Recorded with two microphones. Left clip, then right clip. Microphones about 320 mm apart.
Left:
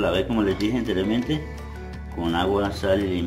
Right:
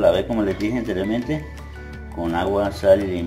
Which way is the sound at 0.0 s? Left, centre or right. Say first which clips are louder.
Right 5 dB; centre.